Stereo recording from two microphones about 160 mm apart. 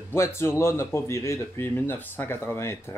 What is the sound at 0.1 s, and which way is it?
Speech, 15° left (ahead or behind).